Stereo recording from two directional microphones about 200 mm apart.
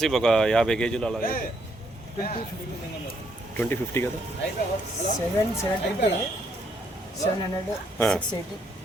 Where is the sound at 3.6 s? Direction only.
10° left (ahead or behind).